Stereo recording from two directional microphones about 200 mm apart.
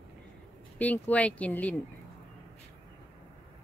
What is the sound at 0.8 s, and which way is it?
Speech, 5° left (ahead or behind).